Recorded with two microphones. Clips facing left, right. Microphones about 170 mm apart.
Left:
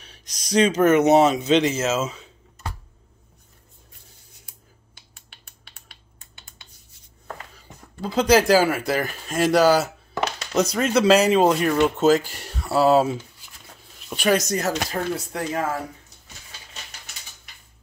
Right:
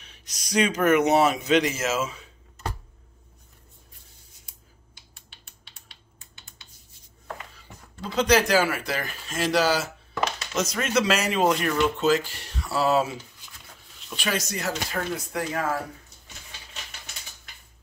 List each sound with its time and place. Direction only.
0.0 s speech: 35° left (ahead or behind)
4.9 s typing: 55° left (ahead or behind)
8.0 s speech: 30° left (ahead or behind)
10.5 s speech: 35° left (ahead or behind)
14.0 s speech: 45° left (ahead or behind)
14.9 s speech: 25° left (ahead or behind)